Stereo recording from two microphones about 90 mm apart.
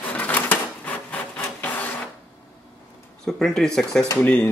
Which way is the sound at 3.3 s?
5° left (ahead or behind).